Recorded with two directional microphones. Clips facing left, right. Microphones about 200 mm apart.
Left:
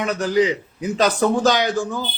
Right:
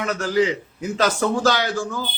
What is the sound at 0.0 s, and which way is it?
A man's voice, 15° left (ahead or behind).